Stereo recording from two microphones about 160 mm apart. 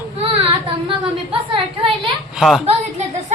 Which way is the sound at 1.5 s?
30° right (ahead or behind).